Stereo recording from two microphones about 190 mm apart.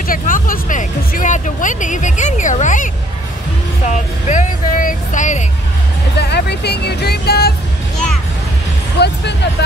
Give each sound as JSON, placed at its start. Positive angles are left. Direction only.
{"t": 0.0, "sound": "speech", "side_deg": 50}
{"t": 6.1, "sound": "speech", "side_deg": 60}
{"t": 9.0, "sound": "speech", "side_deg": 60}